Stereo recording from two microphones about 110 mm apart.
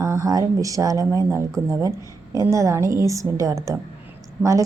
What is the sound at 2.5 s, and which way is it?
A woman's voice, 30° right (ahead or behind).